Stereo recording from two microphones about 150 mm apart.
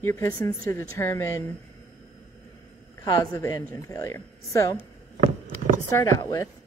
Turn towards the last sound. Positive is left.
turn(degrees=25)  # may be behind; listen again after turning